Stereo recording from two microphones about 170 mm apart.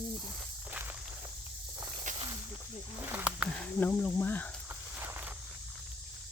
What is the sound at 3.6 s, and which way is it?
Speech, 10° left (ahead or behind).